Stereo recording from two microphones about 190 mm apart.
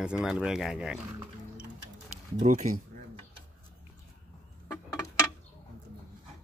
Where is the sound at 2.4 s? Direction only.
45° right (ahead or behind).